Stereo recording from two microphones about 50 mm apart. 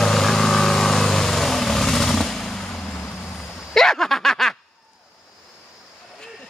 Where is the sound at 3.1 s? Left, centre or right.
Left.